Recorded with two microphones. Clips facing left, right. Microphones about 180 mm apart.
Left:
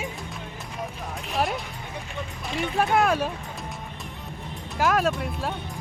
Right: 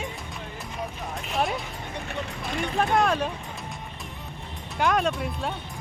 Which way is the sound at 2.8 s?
5° left (ahead or behind).